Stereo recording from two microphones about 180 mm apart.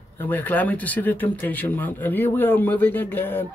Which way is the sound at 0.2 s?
10° left (ahead or behind).